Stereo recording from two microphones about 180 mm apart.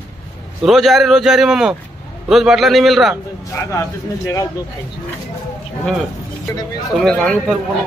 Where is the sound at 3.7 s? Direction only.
15° left (ahead or behind).